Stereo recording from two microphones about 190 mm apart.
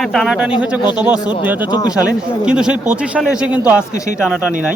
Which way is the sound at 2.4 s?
5° right (ahead or behind).